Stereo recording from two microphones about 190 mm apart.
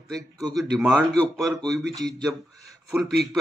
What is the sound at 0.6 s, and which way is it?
A man's voice, centre (ahead or behind).